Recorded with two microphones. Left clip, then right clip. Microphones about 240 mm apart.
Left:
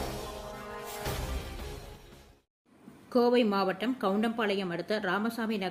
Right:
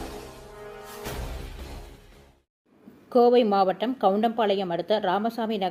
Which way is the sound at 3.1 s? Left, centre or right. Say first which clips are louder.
Right 7 dB; centre.